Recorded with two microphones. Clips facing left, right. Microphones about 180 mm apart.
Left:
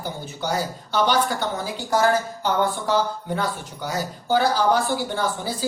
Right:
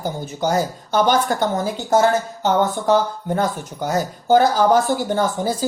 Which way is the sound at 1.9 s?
25° right (ahead or behind).